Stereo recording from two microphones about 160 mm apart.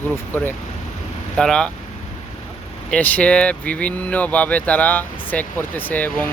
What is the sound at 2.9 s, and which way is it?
Speech, 10° left (ahead or behind).